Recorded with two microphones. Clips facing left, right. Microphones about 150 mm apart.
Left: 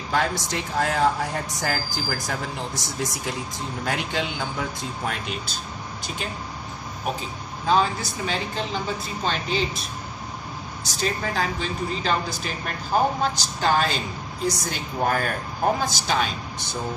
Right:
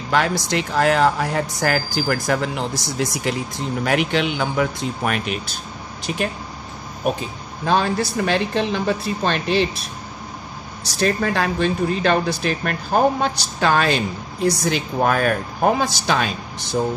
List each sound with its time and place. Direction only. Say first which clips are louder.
0.1 s speech: right 5 dB; 80° right
7.6 s speech: right 3 dB; 70° right (ahead or behind)
11.0 s speech: right 6 dB; 70° right (ahead or behind)